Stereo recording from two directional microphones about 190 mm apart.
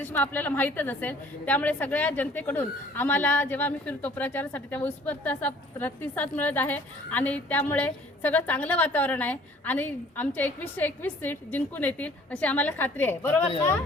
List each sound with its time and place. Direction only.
0.0 s a woman's voice: 10° left (ahead or behind)